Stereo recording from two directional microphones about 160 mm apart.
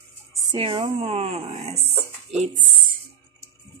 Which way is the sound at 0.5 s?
35° right (ahead or behind).